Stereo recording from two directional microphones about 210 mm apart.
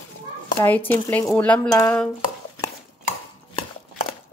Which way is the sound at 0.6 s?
15° left (ahead or behind).